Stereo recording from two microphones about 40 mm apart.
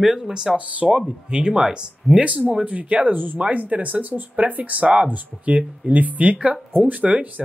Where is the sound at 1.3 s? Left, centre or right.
Right.